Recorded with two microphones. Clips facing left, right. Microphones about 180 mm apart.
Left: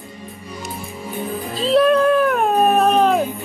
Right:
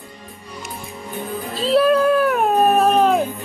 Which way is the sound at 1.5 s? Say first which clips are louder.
Left 1 dB; centre (ahead or behind).